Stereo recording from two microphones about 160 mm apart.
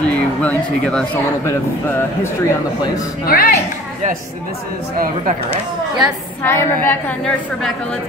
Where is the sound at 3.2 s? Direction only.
65° left (ahead or behind).